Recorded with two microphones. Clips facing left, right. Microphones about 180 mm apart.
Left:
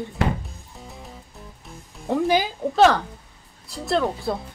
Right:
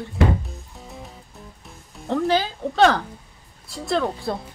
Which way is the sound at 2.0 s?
15° left (ahead or behind).